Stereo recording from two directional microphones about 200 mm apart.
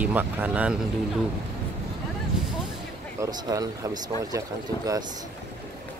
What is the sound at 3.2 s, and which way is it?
Speech, 20° right (ahead or behind).